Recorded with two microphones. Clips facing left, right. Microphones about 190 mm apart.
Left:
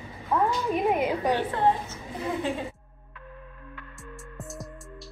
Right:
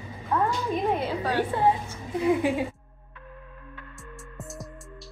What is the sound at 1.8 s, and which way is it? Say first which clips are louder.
Speech: right 8 dB; 15° right (ahead or behind).